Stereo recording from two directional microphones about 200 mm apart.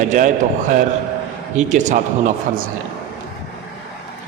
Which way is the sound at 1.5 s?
35° right (ahead or behind).